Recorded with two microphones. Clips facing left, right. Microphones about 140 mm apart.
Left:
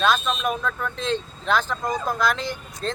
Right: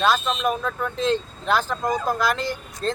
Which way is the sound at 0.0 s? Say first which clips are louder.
Right 1 dB; 5° right (ahead or behind).